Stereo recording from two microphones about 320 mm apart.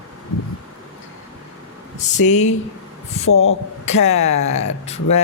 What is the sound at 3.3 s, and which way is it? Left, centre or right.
Speech, left.